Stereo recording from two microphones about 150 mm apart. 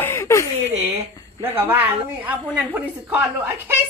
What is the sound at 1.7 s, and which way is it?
A child's voice, 10° right (ahead or behind).